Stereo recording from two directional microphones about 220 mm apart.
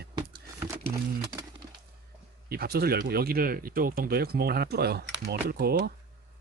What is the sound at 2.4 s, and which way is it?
Speech, 45° right (ahead or behind).